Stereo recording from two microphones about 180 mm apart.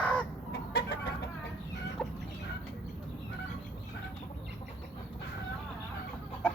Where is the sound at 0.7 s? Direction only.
65° left (ahead or behind).